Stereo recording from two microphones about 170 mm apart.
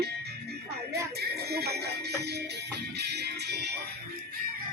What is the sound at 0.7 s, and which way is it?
Music, 70° right (ahead or behind).